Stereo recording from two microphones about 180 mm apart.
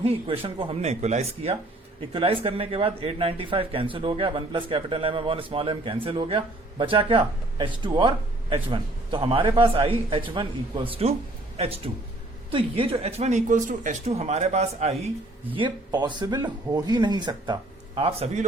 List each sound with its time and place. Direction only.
0.0 s speech: 30° right (ahead or behind)
15.5 s speech: 25° right (ahead or behind)